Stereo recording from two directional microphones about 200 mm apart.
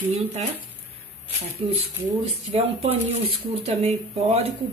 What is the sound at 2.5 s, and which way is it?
Speech, 30° right (ahead or behind).